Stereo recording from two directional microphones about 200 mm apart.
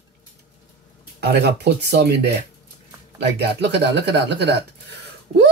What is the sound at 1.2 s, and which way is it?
Speech, 55° right (ahead or behind).